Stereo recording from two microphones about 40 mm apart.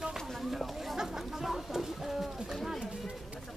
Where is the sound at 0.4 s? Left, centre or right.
Centre.